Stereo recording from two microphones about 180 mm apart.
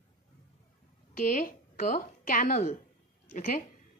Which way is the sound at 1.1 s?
45° left (ahead or behind).